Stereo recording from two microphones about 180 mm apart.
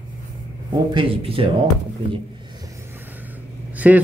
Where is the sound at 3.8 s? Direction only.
5° right (ahead or behind).